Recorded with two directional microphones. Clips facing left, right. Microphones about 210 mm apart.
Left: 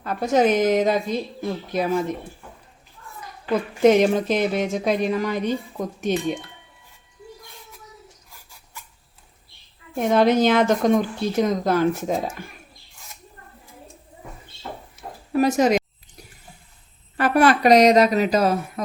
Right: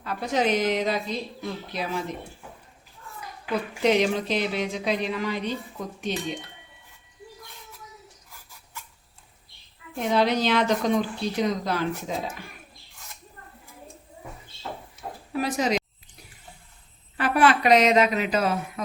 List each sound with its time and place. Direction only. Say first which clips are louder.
0.0 s speech: left 6 dB; 45° left (ahead or behind)
3.8 s speech: left 6 dB; 45° left (ahead or behind)
10.0 s speech: left 6 dB; 50° left (ahead or behind)
15.3 s speech: left 7 dB; 45° left (ahead or behind)
17.2 s a woman's voice: left 4 dB; 45° left (ahead or behind)